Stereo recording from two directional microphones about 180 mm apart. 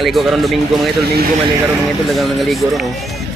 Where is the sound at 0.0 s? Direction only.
Centre (ahead or behind).